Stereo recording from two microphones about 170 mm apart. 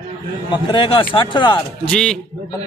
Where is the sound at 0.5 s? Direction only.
30° left (ahead or behind).